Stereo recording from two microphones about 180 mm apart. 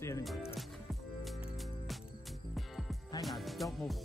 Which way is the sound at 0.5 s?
Centre (ahead or behind).